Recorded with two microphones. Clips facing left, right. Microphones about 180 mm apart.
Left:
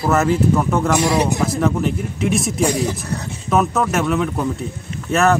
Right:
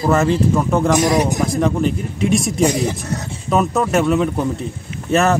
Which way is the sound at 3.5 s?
Centre (ahead or behind).